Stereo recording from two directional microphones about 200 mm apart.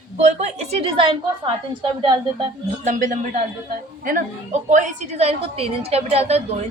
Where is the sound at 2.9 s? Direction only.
40° right (ahead or behind).